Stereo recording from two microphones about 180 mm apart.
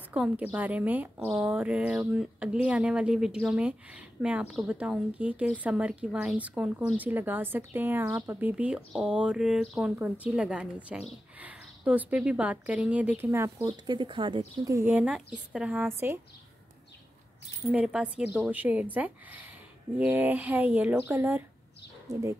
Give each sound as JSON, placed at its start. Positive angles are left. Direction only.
{"t": 0.1, "sound": "a woman's voice", "side_deg": -5}
{"t": 13.7, "sound": "speech", "side_deg": -25}
{"t": 14.6, "sound": "a woman's voice", "side_deg": -15}
{"t": 17.6, "sound": "a woman's voice", "side_deg": -5}